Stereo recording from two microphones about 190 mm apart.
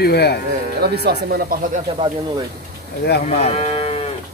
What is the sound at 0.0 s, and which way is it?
Speech, 55° left (ahead or behind).